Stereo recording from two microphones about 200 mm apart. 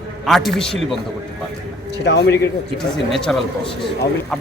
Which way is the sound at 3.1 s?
Centre (ahead or behind).